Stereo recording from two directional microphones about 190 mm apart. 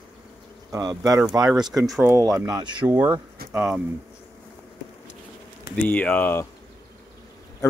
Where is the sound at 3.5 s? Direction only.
5° right (ahead or behind).